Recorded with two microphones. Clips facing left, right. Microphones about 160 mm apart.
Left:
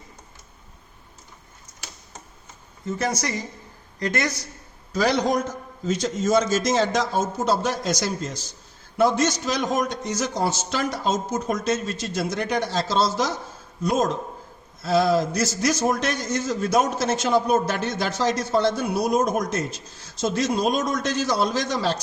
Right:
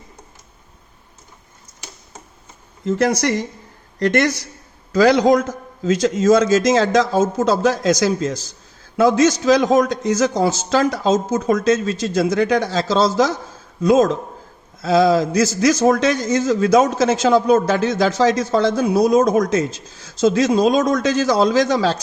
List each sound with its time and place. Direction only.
2.8 s speech: 75° right (ahead or behind)
4.9 s a man's voice: 90° right
14.8 s a man's voice: 90° right